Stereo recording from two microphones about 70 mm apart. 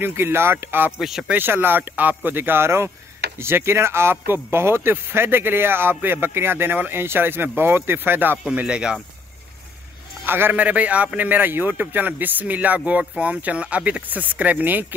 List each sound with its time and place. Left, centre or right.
0.0 s speech: right
0.9 s speech: centre
1.3 s speech: right
8.5 s speech: centre
10.2 s a man's voice: right